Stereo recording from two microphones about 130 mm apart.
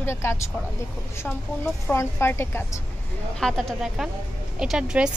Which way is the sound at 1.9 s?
20° left (ahead or behind).